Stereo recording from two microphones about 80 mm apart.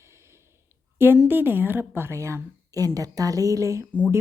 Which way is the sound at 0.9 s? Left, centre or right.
Right.